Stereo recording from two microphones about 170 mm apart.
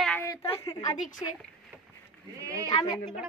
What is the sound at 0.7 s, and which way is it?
Child singing, 20° left (ahead or behind).